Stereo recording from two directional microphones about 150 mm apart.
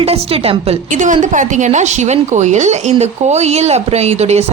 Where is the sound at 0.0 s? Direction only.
40° right (ahead or behind).